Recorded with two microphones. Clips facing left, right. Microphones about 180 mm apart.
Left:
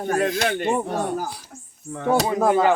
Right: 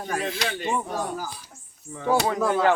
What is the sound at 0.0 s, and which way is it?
Speech, 50° left (ahead or behind).